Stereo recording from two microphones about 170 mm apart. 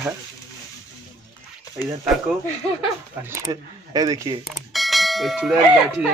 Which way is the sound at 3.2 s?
20° right (ahead or behind).